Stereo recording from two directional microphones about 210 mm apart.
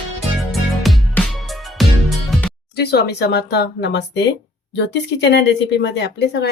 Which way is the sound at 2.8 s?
50° left (ahead or behind).